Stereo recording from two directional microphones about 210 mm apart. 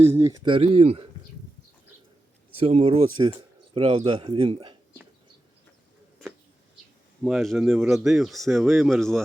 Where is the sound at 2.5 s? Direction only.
30° right (ahead or behind).